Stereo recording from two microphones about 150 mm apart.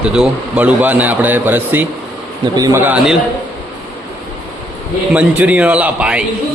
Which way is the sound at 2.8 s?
5° right (ahead or behind).